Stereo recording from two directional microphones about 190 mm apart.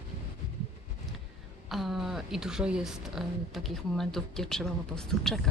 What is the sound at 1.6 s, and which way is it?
A woman's voice, centre (ahead or behind).